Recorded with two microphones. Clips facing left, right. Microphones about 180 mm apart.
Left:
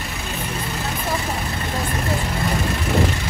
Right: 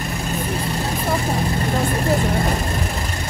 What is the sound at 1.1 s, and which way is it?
Vehicle, 35° right (ahead or behind).